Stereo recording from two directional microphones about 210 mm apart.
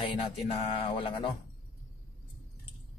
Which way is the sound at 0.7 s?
25° left (ahead or behind).